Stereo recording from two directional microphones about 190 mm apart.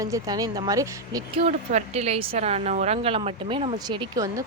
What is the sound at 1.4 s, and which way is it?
A woman's voice, 35° right (ahead or behind).